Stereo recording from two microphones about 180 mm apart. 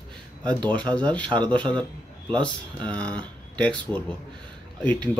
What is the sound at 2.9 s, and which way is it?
Speech, 5° left (ahead or behind).